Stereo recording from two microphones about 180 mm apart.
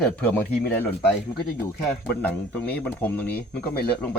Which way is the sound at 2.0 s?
10° left (ahead or behind).